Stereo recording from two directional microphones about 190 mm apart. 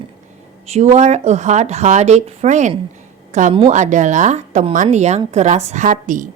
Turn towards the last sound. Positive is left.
turn(degrees=-45)  # may be behind; listen again after turning